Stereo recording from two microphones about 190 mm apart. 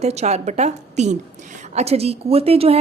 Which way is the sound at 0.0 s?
35° right (ahead or behind).